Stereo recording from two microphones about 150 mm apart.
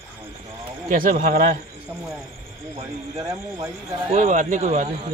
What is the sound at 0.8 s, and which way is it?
Speech, 65° right (ahead or behind).